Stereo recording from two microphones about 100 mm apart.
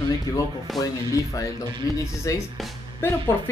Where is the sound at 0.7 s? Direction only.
Centre (ahead or behind).